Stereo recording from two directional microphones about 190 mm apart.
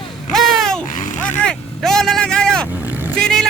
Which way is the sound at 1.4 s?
Centre (ahead or behind).